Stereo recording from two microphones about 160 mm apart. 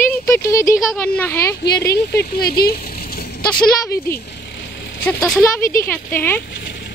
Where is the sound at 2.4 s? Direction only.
75° left (ahead or behind).